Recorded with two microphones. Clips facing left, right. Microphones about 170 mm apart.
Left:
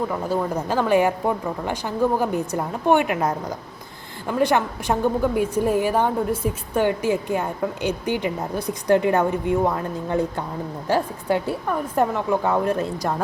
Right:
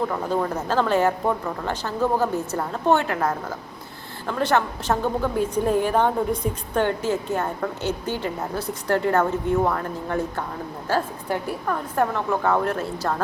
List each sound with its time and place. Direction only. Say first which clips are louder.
0.1 s speech: left 1 dB; 10° left (ahead or behind)